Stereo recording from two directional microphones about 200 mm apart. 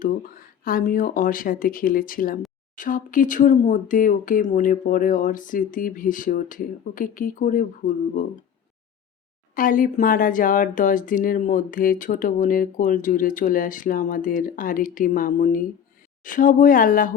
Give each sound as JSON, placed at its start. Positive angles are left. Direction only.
{"t": 0.0, "sound": "speech", "side_deg": 45}
{"t": 9.6, "sound": "speech", "side_deg": 45}